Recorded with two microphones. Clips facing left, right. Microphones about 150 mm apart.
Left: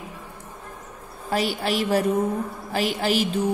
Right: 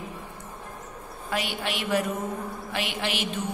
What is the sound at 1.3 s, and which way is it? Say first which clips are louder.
A woman's voice: left 6 dB; 35° left (ahead or behind).